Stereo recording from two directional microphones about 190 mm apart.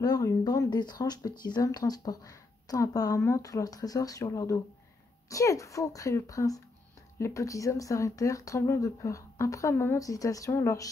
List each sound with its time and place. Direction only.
0.0 s speech: 20° left (ahead or behind)